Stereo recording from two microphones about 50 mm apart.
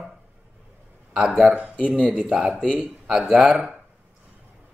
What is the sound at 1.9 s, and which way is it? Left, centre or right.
Speech, right.